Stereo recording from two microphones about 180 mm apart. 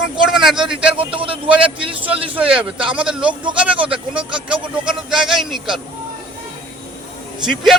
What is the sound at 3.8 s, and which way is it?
Speech, 30° right (ahead or behind).